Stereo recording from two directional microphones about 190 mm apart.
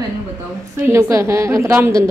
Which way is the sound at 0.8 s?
15° right (ahead or behind).